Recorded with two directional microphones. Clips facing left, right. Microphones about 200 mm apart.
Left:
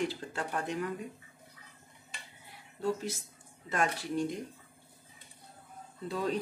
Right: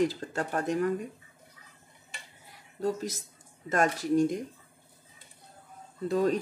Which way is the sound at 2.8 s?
40° right (ahead or behind).